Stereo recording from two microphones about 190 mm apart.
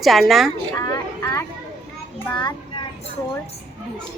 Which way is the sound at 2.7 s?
30° left (ahead or behind).